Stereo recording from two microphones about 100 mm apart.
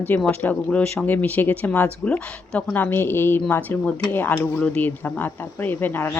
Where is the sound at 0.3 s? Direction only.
10° left (ahead or behind).